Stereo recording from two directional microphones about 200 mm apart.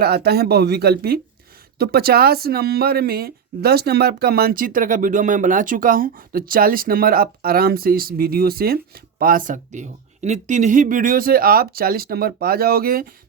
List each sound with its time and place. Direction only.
0.0 s speech: 55° right (ahead or behind)